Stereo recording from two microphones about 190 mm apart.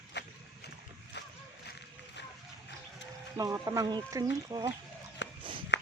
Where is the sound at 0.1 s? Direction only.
65° left (ahead or behind).